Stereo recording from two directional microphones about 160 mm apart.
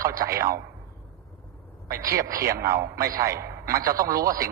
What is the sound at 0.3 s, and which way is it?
Speech, 65° right (ahead or behind).